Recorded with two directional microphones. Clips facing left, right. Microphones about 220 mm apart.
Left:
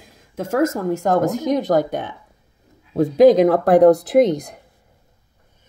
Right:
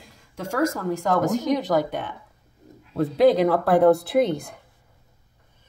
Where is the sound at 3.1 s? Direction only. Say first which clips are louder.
Left 6 dB; 45° left (ahead or behind).